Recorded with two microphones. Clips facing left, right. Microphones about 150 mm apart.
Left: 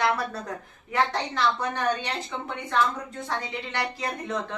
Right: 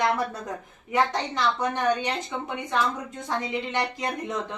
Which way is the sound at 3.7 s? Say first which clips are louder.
Left 1 dB; 15° right (ahead or behind).